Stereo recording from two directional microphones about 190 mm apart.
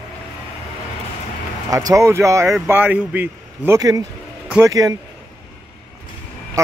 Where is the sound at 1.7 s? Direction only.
20° right (ahead or behind).